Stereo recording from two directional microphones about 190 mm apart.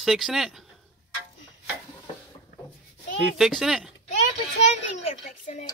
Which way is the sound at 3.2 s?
Centre (ahead or behind).